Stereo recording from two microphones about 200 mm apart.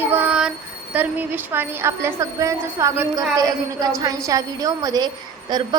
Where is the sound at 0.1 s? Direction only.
10° right (ahead or behind).